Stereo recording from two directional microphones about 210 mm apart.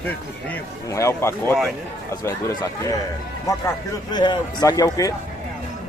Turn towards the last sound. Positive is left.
turn(degrees=15)  # may be behind; listen again after turning